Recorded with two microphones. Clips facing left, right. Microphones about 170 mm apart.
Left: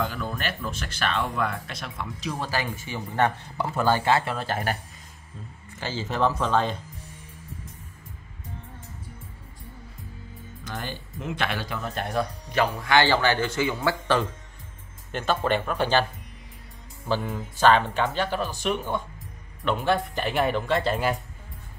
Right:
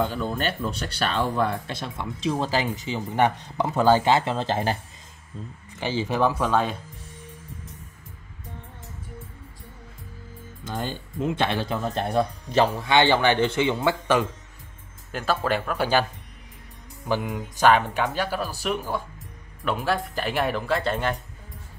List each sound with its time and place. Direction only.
0.0 s speech: 30° right (ahead or behind)
5.8 s speech: 15° right (ahead or behind)
10.6 s speech: 25° right (ahead or behind)
15.0 s speech: 5° right (ahead or behind)